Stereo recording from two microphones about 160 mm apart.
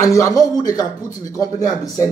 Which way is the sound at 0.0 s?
20° left (ahead or behind).